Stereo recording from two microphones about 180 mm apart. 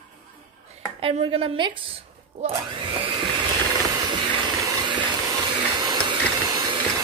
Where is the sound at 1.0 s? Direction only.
35° right (ahead or behind).